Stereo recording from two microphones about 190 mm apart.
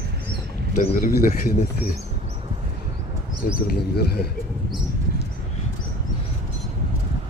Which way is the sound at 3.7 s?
55° left (ahead or behind).